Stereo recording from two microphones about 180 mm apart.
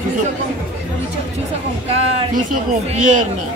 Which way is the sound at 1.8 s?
40° right (ahead or behind).